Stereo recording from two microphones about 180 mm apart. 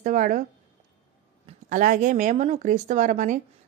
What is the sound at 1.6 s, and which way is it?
A woman's voice, 45° right (ahead or behind).